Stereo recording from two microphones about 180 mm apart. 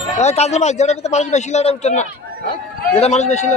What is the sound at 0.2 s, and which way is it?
A man's voice, 35° left (ahead or behind).